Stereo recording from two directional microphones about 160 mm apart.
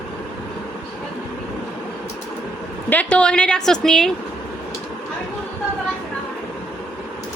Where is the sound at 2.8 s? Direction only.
10° left (ahead or behind).